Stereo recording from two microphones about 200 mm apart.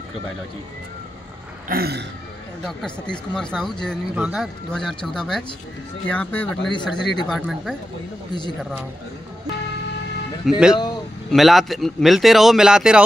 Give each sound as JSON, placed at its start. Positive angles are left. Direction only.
{"t": 1.7, "sound": "throat clearing", "side_deg": -50}
{"t": 2.6, "sound": "a man's voice", "side_deg": 0}
{"t": 8.3, "sound": "speech", "side_deg": 20}
{"t": 10.4, "sound": "a man's voice", "side_deg": 0}